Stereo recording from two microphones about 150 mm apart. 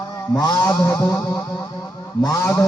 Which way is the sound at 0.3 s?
25° left (ahead or behind).